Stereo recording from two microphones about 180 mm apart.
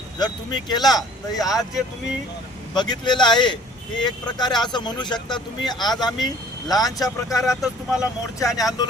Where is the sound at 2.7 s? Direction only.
25° left (ahead or behind).